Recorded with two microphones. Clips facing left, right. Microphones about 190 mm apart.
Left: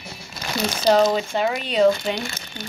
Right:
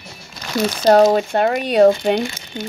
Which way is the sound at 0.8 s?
55° right (ahead or behind).